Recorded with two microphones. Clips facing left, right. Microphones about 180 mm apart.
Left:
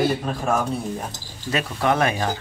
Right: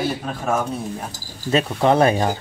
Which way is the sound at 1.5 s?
30° right (ahead or behind).